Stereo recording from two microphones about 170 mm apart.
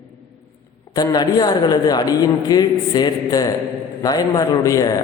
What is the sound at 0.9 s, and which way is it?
A man's voice, 20° left (ahead or behind).